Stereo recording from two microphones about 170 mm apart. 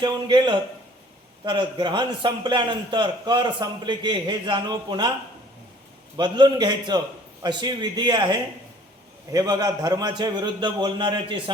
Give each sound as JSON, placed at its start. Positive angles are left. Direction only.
{"t": 0.0, "sound": "a man's voice", "side_deg": -30}
{"t": 6.1, "sound": "a man's voice", "side_deg": -25}